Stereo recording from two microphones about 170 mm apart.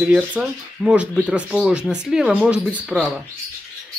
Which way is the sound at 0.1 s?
5° right (ahead or behind).